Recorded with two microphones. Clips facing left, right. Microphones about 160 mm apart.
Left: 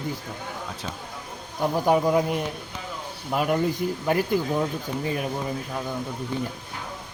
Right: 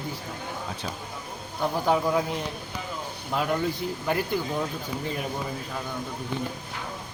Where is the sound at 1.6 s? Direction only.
15° left (ahead or behind).